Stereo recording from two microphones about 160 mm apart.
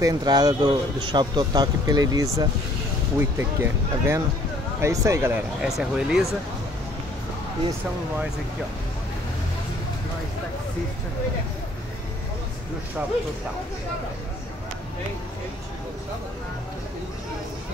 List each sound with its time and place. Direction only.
0.0 s a man's voice: 25° right (ahead or behind)
5.8 s speech: 5° right (ahead or behind)